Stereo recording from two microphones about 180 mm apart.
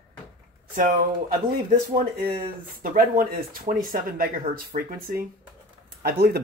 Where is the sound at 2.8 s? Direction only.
50° right (ahead or behind).